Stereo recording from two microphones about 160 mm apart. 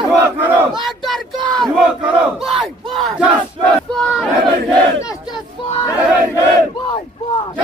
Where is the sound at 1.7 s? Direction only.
Centre (ahead or behind).